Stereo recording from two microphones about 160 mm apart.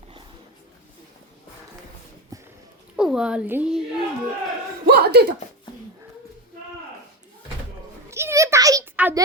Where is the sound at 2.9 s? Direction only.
5° right (ahead or behind).